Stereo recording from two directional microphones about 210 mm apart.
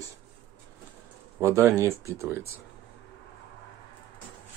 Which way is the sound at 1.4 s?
10° right (ahead or behind).